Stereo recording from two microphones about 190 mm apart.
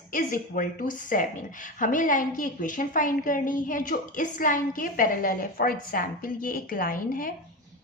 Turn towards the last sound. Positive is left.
turn(degrees=50)  # may be behind; listen again after turning